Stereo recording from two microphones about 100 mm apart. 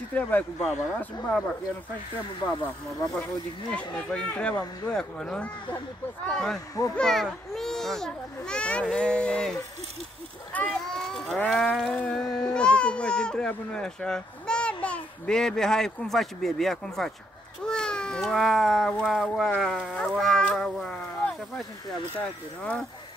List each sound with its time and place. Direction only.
0.1 s speech: 15° left (ahead or behind)
3.9 s speech: 10° left (ahead or behind)
10.5 s a sound: 10° left (ahead or behind)
11.3 s a child's voice: 10° left (ahead or behind)